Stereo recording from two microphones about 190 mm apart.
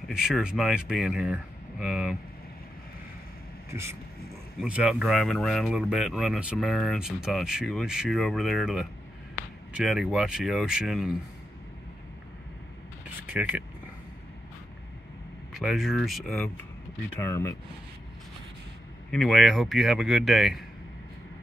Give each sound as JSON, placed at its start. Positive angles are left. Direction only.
{"t": 0.1, "sound": "speech", "side_deg": -5}
{"t": 4.6, "sound": "speech", "side_deg": -5}
{"t": 13.3, "sound": "speech", "side_deg": -5}
{"t": 15.5, "sound": "speech", "side_deg": 0}
{"t": 17.3, "sound": "speech", "side_deg": 15}
{"t": 19.0, "sound": "speech", "side_deg": 0}